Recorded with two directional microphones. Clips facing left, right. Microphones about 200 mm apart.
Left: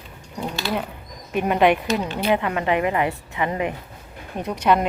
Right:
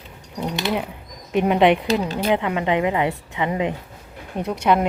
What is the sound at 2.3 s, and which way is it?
A woman's voice, 15° right (ahead or behind).